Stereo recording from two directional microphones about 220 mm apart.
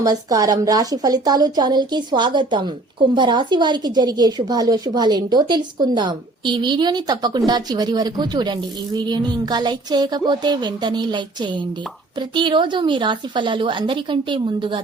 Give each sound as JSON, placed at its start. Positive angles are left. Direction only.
{"t": 0.0, "sound": "a woman's voice", "side_deg": -15}